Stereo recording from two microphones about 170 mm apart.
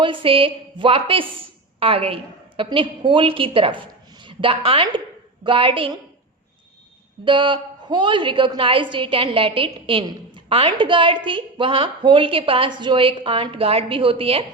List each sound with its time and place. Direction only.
0.0 s a woman's voice: 30° right (ahead or behind)
7.3 s a woman's voice: 30° right (ahead or behind)